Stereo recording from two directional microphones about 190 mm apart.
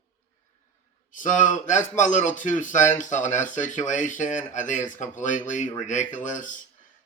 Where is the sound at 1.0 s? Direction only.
40° left (ahead or behind).